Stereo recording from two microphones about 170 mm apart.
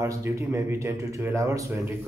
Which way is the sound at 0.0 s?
15° right (ahead or behind).